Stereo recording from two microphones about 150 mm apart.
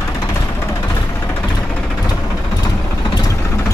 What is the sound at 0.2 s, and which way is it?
Music, 20° left (ahead or behind).